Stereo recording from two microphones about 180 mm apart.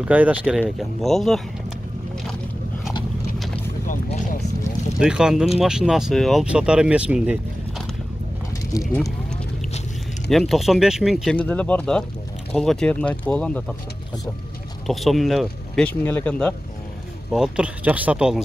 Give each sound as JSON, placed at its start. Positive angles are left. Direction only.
{"t": 0.0, "sound": "speech", "side_deg": -10}
{"t": 3.8, "sound": "speech", "side_deg": 45}
{"t": 4.9, "sound": "speech", "side_deg": -5}
{"t": 8.7, "sound": "speech", "side_deg": 20}
{"t": 10.3, "sound": "speech", "side_deg": 0}
{"t": 14.9, "sound": "speech", "side_deg": 0}
{"t": 17.3, "sound": "speech", "side_deg": -5}